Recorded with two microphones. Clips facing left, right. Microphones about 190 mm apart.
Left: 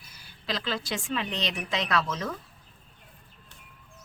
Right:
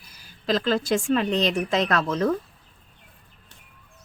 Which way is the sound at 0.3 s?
45° right (ahead or behind).